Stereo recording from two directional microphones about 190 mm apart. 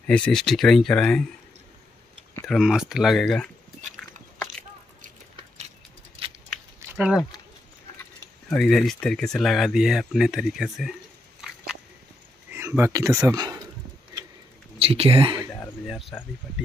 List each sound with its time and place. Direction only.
0.0 s speech: 5° left (ahead or behind)
2.4 s a sound: centre (ahead or behind)
8.5 s speech: centre (ahead or behind)
11.4 s biting: centre (ahead or behind)
12.5 s speech: 10° right (ahead or behind)
14.8 s speech: 30° right (ahead or behind)